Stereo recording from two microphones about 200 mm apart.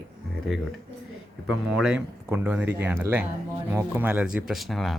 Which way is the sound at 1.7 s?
5° right (ahead or behind).